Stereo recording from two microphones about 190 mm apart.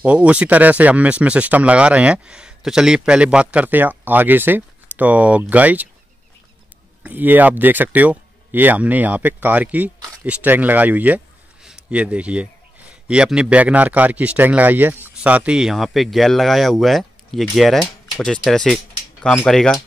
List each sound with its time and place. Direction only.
0.0 s speech: 5° right (ahead or behind)
7.0 s a man's voice: 10° right (ahead or behind)